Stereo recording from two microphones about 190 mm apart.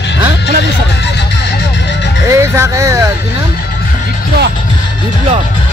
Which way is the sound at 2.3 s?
15° right (ahead or behind).